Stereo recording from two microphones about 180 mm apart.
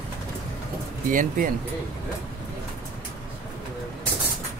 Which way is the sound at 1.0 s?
50° right (ahead or behind).